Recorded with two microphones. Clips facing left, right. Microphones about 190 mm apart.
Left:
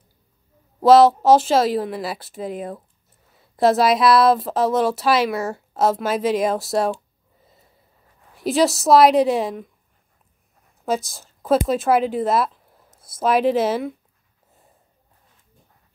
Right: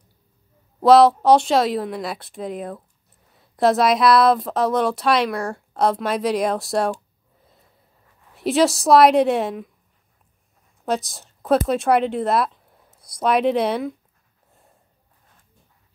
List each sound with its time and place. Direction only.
0.7 s speech: centre (ahead or behind)
8.4 s speech: centre (ahead or behind)
10.9 s a woman's voice: centre (ahead or behind)